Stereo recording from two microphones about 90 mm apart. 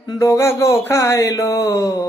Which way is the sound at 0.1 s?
35° left (ahead or behind).